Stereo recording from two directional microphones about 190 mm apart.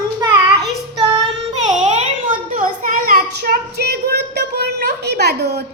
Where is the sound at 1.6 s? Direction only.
35° right (ahead or behind); by 5.6 s 55° right (ahead or behind).